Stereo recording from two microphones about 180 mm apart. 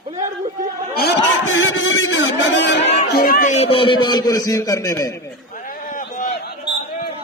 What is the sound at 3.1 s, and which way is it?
Music, 55° left (ahead or behind).